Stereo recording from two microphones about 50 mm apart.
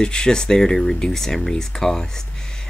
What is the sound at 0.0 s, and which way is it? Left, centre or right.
Speech, centre.